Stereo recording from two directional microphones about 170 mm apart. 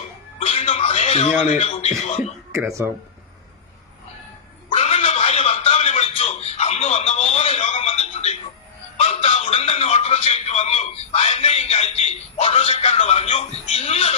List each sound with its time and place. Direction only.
0.3 s speech: 35° left (ahead or behind)
4.7 s a sound: 35° left (ahead or behind)
9.0 s music: 35° left (ahead or behind)